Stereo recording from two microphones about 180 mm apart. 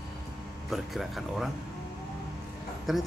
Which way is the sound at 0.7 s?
Centre (ahead or behind).